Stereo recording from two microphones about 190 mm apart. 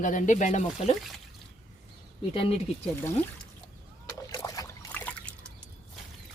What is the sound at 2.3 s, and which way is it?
Speech, 30° left (ahead or behind).